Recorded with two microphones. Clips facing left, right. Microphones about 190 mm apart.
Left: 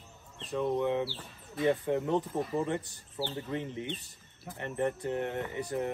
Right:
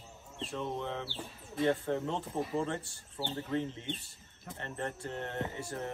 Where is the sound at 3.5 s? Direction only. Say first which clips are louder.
Even; 15° left (ahead or behind).